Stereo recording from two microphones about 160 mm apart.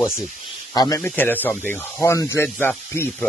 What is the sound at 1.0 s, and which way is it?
Speech, 10° left (ahead or behind).